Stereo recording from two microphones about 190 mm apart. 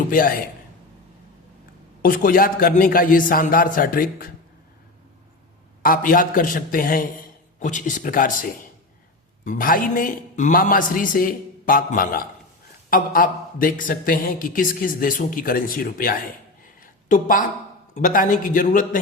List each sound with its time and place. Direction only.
0.1 s a man's voice: 45° left (ahead or behind)
2.0 s a man's voice: 45° left (ahead or behind)
5.8 s a man's voice: 45° left (ahead or behind)
16.8 s a sound: 45° left (ahead or behind)
17.9 s a man's voice: 45° left (ahead or behind)